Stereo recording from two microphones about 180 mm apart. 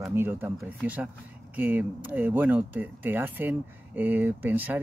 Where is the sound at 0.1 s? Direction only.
15° right (ahead or behind).